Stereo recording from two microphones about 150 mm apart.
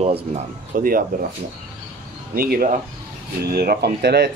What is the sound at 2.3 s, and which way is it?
Speech, 75° right (ahead or behind).